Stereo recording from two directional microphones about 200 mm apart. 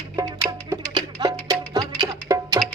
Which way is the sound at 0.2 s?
15° right (ahead or behind).